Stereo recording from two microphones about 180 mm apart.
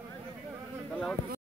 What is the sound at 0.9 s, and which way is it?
Insect, 5° left (ahead or behind).